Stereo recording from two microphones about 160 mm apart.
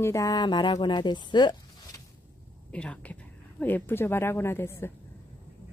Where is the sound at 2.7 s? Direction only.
5° left (ahead or behind).